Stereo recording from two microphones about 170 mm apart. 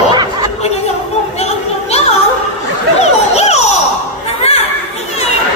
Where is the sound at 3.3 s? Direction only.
40° left (ahead or behind).